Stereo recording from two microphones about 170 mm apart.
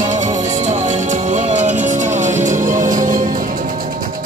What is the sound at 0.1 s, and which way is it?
Music, 45° right (ahead or behind).